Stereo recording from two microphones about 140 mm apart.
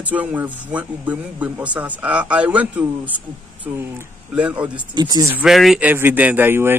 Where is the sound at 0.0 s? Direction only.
10° right (ahead or behind).